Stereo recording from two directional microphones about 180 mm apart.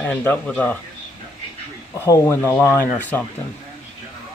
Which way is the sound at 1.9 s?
15° left (ahead or behind).